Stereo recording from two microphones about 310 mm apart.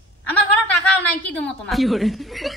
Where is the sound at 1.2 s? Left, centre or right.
Centre.